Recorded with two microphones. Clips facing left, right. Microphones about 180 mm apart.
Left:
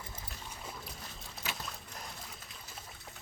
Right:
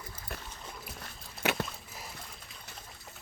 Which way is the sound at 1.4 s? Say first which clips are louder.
Right 12 dB; 65° right (ahead or behind).